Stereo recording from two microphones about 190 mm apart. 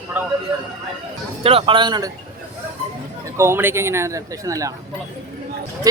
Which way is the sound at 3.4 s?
15° right (ahead or behind).